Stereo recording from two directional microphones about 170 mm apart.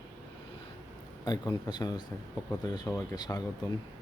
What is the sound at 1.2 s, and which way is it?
Speech, 25° left (ahead or behind).